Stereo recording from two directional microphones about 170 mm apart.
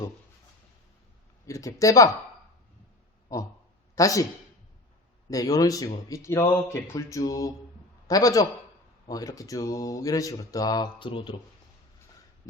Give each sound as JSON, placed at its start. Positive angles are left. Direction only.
{"t": 1.5, "sound": "speech", "side_deg": 20}
{"t": 3.9, "sound": "speech", "side_deg": 20}
{"t": 5.3, "sound": "a man's voice", "side_deg": 20}